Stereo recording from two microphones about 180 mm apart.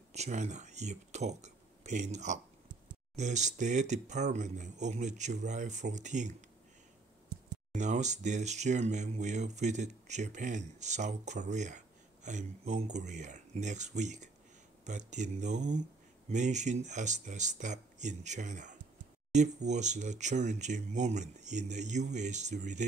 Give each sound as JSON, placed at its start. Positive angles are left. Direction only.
{"t": 0.1, "sound": "speech", "side_deg": -40}
{"t": 7.7, "sound": "speech", "side_deg": -40}